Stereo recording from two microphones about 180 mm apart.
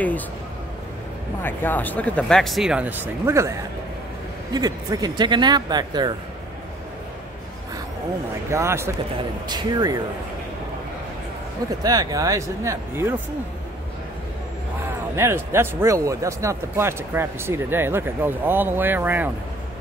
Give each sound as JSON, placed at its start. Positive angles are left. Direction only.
{"t": 1.4, "sound": "speech", "side_deg": 10}
{"t": 8.5, "sound": "speech", "side_deg": -15}
{"t": 11.8, "sound": "speech", "side_deg": -20}
{"t": 15.1, "sound": "speech", "side_deg": -15}